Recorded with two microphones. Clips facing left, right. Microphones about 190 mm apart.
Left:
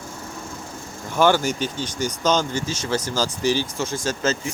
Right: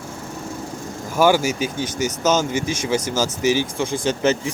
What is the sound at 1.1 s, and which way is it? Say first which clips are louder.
Speech: right 2 dB; 10° right (ahead or behind).